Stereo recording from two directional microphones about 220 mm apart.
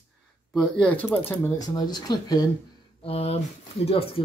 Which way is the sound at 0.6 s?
5° left (ahead or behind).